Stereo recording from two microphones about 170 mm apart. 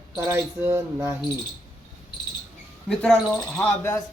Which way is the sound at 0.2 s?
15° right (ahead or behind).